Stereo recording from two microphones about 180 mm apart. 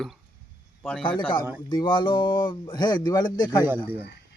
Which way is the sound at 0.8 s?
5° left (ahead or behind).